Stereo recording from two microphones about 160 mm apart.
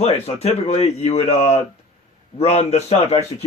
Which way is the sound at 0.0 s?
40° left (ahead or behind).